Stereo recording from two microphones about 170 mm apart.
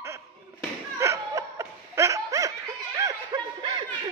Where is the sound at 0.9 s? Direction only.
15° right (ahead or behind).